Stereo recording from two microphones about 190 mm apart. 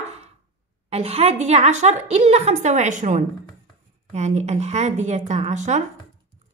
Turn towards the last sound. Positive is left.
turn(degrees=-35)  # may be behind; listen again after turning